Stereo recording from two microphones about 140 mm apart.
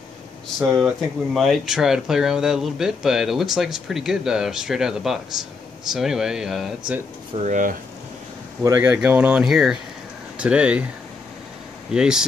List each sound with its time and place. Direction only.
0.6 s speech: centre (ahead or behind)
7.4 s speech: 65° right (ahead or behind)
8.6 s speech: 15° right (ahead or behind)
11.9 s speech: 5° right (ahead or behind)